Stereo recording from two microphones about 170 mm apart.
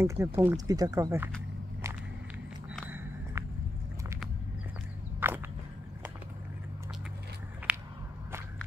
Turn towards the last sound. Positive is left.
turn(degrees=-5)  # may be behind; listen again after turning